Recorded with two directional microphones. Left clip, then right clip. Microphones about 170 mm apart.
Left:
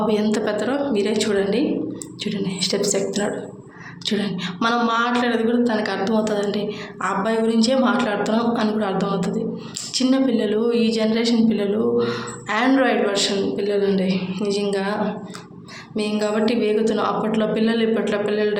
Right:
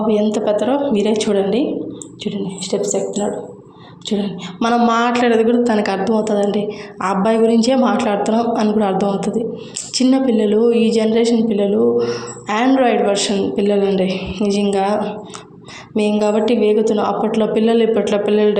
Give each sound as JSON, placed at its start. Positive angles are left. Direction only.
{"t": 0.3, "sound": "a woman's voice", "side_deg": -20}
{"t": 0.6, "sound": "a woman's voice", "side_deg": -30}
{"t": 4.9, "sound": "a woman's voice", "side_deg": -40}
{"t": 16.0, "sound": "a woman's voice", "side_deg": -30}